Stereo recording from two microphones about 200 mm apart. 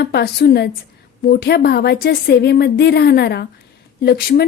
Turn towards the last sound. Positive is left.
turn(degrees=50)  # may be behind; listen again after turning